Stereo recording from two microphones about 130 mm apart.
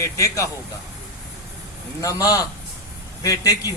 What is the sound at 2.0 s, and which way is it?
A man's voice, 25° left (ahead or behind).